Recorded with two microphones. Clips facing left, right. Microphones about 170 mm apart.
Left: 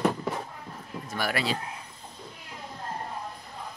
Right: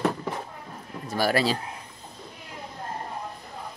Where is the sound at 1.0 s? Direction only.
35° right (ahead or behind).